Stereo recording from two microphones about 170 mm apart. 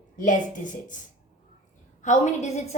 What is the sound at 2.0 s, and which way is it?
Speech, 45° left (ahead or behind).